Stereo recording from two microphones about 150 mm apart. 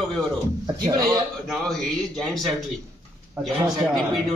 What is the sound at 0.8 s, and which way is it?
Speech, 30° right (ahead or behind).